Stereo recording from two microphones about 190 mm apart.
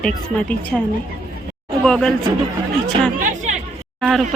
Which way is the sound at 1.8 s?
5° left (ahead or behind).